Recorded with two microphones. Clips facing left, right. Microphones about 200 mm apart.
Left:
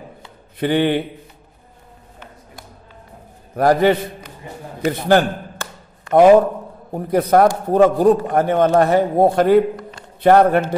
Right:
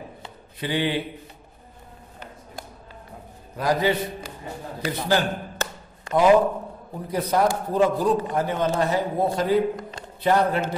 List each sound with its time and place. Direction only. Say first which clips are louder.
0.6 s a man's voice: left 8 dB; 55° left (ahead or behind)
3.5 s a man's voice: left 8 dB; 60° left (ahead or behind)
6.9 s a man's voice: left 9 dB; 55° left (ahead or behind)